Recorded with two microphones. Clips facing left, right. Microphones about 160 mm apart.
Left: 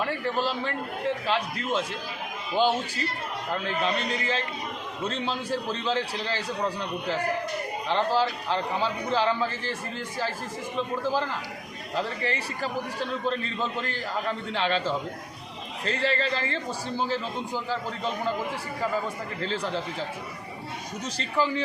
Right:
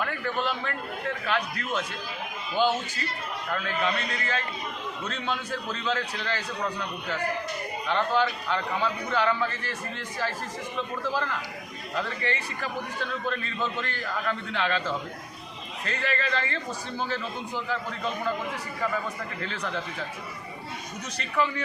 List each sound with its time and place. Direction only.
0.0 s a man's voice: 30° left (ahead or behind)
10.8 s a man's voice: 30° left (ahead or behind)
17.7 s a man's voice: 30° left (ahead or behind)
19.4 s a man's voice: 30° left (ahead or behind)
21.2 s a man's voice: 30° left (ahead or behind)